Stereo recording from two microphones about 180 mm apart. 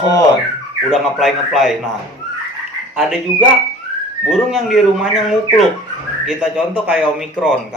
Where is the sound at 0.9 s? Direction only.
Centre (ahead or behind).